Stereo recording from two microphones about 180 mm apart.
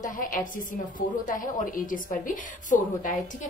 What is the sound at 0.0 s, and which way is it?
A woman's voice, 50° left (ahead or behind).